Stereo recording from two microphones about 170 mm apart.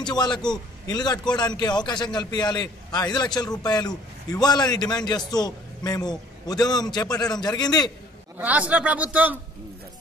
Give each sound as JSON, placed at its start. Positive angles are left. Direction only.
{"t": 0.0, "sound": "a man's voice", "side_deg": 25}
{"t": 8.4, "sound": "a man's voice", "side_deg": -10}